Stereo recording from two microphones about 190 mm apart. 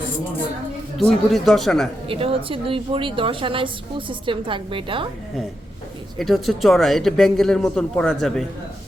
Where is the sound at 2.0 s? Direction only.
30° right (ahead or behind).